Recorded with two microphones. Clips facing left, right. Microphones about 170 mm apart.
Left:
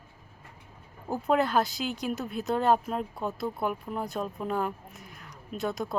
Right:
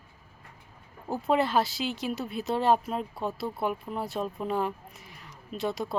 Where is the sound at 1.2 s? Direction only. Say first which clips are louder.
Even; centre (ahead or behind).